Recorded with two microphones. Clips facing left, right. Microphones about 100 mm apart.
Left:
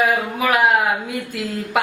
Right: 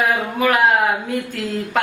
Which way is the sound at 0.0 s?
5° left (ahead or behind).